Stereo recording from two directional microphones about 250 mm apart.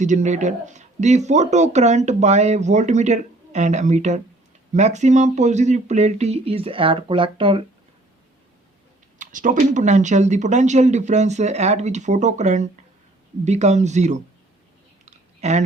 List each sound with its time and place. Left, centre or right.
0.0 s speech: right
9.1 s speech: right
15.0 s a sound: right